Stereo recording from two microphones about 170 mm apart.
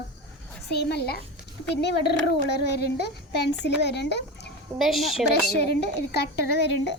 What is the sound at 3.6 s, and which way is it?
Speech, 85° left.